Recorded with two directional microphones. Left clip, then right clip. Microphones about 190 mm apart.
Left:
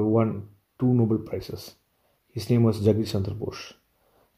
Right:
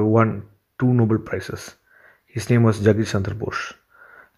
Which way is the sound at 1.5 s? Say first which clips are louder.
Right 5 dB; 35° right (ahead or behind).